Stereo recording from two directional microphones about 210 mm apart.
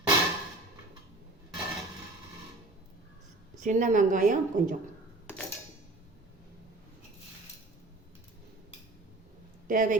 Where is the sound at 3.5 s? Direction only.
35° right (ahead or behind).